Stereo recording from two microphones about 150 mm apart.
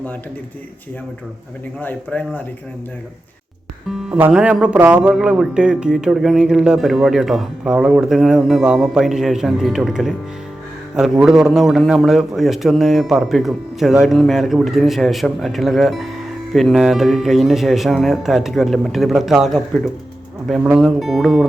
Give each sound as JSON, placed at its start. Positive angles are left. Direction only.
{"t": 1.8, "sound": "speech", "side_deg": 10}
{"t": 3.8, "sound": "speech", "side_deg": -5}